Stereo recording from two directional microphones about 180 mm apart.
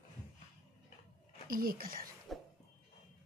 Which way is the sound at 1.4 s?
55° right (ahead or behind).